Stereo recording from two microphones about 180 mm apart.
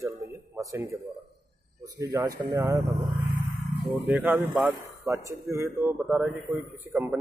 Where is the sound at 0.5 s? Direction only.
15° right (ahead or behind).